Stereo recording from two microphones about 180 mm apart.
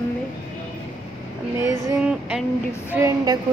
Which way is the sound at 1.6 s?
15° right (ahead or behind).